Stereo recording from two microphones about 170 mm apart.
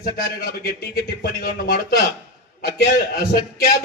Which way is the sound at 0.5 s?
60° left (ahead or behind).